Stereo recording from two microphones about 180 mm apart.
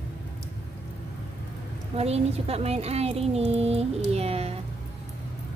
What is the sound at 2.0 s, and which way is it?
A woman's voice, 35° right (ahead or behind).